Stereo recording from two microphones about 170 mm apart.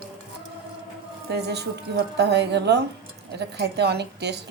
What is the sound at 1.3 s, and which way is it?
A woman's voice, 75° right (ahead or behind).